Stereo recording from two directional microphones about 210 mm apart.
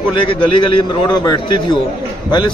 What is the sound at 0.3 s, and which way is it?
A man's voice, 25° left (ahead or behind).